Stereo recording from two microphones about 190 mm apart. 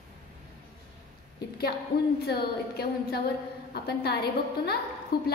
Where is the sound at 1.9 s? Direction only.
30° left (ahead or behind).